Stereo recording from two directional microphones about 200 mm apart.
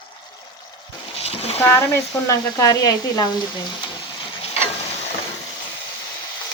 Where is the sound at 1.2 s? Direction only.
30° left (ahead or behind).